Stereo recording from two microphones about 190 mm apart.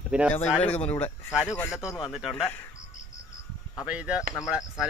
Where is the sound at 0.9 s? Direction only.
10° left (ahead or behind).